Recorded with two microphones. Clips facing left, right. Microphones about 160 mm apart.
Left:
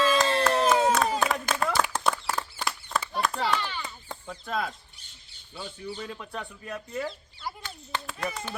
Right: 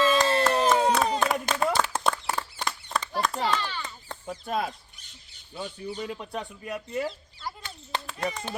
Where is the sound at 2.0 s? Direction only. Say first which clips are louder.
Even; centre (ahead or behind).